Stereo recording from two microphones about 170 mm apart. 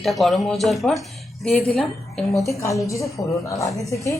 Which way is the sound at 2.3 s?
20° left (ahead or behind).